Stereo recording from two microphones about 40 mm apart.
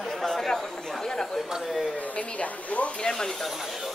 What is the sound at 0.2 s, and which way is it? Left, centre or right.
Chatter, centre.